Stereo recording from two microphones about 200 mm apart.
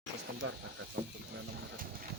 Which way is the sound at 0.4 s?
80° right.